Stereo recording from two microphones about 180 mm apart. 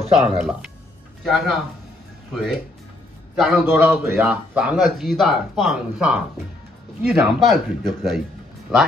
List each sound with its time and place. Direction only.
0.1 s speech: 35° right (ahead or behind)
0.4 s speech: 5° right (ahead or behind)
3.3 s speech: centre (ahead or behind)
3.6 s a man's voice: 10° right (ahead or behind)